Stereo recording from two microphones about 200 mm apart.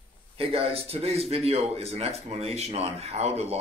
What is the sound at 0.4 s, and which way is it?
Speech, 30° right (ahead or behind).